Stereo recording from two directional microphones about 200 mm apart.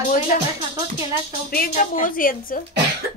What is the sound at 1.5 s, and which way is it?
Speech, 45° left (ahead or behind).